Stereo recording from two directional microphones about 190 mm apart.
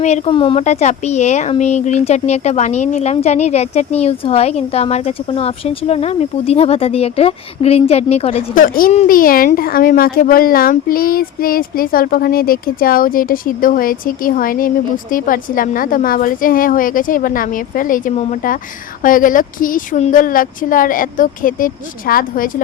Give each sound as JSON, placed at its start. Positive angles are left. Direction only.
{"t": 0.0, "sound": "speech", "side_deg": 35}
{"t": 8.5, "sound": "speech", "side_deg": 45}